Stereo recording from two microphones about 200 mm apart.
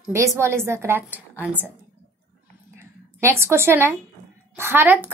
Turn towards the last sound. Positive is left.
turn(degrees=-10)  # may be behind; listen again after turning